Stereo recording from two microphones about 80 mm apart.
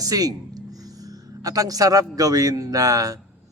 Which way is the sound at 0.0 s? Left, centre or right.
Right.